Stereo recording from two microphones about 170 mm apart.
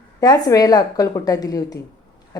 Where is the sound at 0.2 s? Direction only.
20° left (ahead or behind).